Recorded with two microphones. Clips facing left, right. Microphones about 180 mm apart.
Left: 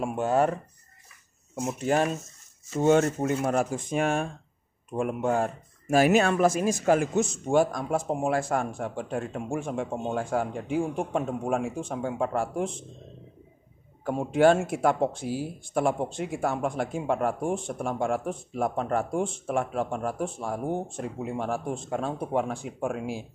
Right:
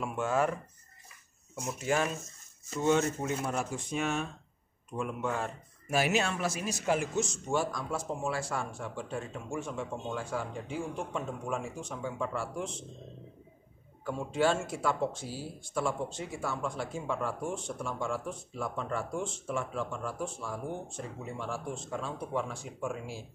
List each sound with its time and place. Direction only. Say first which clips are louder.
0.0 s speech: left 5 dB; 40° left (ahead or behind)
2.8 s speech: left 6 dB; 50° left (ahead or behind)
14.0 s speech: left 8 dB; 55° left (ahead or behind)